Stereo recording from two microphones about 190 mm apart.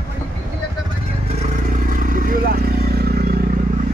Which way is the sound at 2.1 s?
45° right (ahead or behind).